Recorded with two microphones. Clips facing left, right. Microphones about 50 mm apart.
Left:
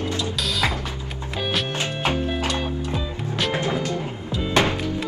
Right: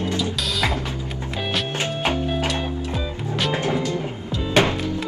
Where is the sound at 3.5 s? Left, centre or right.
Left.